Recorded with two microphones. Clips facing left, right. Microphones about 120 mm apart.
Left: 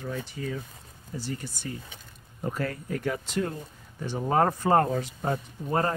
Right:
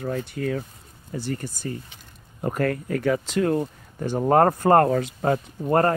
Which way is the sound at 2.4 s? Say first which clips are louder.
Right 7 dB; 60° right (ahead or behind).